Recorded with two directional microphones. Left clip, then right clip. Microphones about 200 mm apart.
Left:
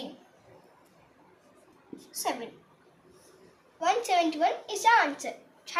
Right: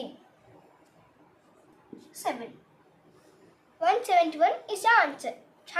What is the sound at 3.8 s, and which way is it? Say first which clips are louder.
A woman's voice: right 3 dB; 20° right (ahead or behind).